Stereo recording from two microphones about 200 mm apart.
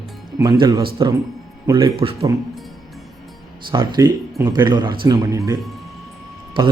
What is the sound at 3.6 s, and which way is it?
Speech, 25° right (ahead or behind).